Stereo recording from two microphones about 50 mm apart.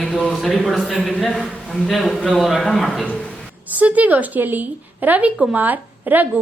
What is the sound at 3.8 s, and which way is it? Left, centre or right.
A woman's voice, right.